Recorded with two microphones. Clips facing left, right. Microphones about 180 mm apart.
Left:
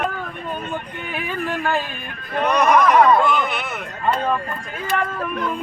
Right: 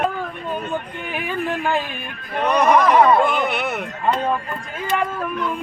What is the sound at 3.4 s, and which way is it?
Speech, 60° right (ahead or behind).